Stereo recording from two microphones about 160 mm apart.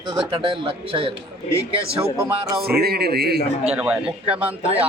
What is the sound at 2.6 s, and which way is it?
Speech, 75° right (ahead or behind).